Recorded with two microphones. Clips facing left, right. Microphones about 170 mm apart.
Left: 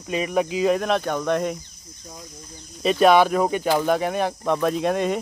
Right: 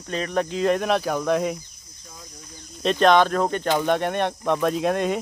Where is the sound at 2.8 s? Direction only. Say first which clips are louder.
Left 1 dB; 5° left (ahead or behind).